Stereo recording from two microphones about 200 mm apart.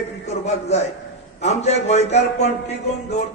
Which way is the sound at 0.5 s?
35° left (ahead or behind).